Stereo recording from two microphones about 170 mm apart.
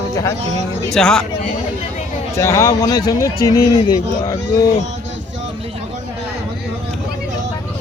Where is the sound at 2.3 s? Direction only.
15° left (ahead or behind).